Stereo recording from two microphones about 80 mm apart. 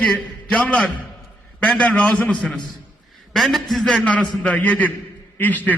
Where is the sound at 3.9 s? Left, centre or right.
Centre.